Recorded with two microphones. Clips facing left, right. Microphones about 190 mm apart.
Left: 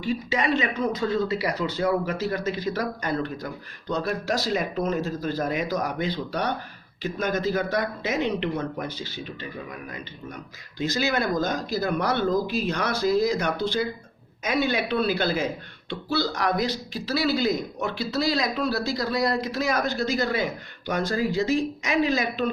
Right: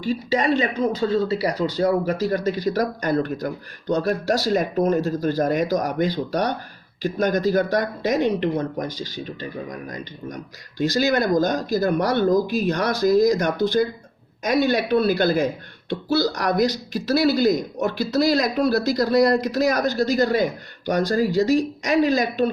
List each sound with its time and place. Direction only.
0.0 s speech: 35° right (ahead or behind)